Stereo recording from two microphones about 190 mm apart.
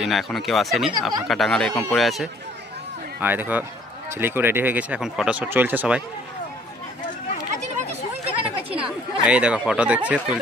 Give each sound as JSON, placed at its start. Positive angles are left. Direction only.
{"t": 0.0, "sound": "speech", "side_deg": 0}
{"t": 8.6, "sound": "chatter", "side_deg": -30}
{"t": 9.2, "sound": "speech", "side_deg": -5}